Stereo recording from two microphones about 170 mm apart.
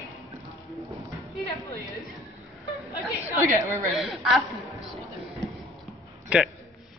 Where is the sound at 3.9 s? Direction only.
Centre (ahead or behind).